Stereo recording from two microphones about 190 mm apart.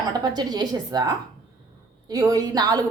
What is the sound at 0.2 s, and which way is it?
A woman's voice, 20° right (ahead or behind).